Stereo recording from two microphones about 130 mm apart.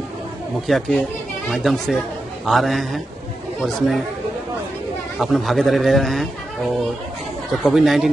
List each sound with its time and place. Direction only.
0.7 s a man's voice: centre (ahead or behind)
5.2 s a man's voice: centre (ahead or behind)
7.5 s a man's voice: centre (ahead or behind)